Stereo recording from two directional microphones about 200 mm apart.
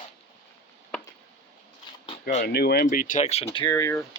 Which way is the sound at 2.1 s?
35° left (ahead or behind).